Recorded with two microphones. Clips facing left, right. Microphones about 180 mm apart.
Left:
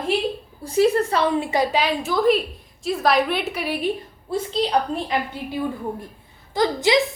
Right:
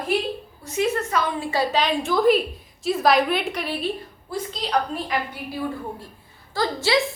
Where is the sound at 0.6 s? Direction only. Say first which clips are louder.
Left 6 dB; 35° left (ahead or behind); by 3.9 s 10° left (ahead or behind).